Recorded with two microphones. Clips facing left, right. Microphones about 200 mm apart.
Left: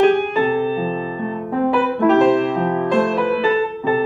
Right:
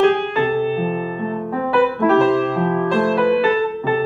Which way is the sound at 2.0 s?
15° left (ahead or behind).